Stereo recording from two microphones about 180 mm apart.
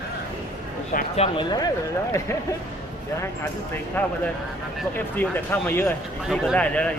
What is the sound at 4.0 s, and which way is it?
Speech, 10° left (ahead or behind).